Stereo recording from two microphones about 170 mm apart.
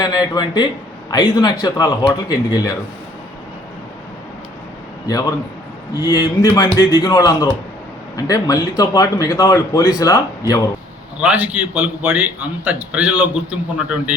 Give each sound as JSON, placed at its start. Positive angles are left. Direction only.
{"t": 0.0, "sound": "a man's voice", "side_deg": 25}
{"t": 6.0, "sound": "a man's voice", "side_deg": 20}
{"t": 11.2, "sound": "a man's voice", "side_deg": -10}